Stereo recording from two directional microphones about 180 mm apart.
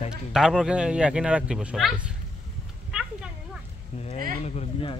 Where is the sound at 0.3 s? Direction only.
5° right (ahead or behind).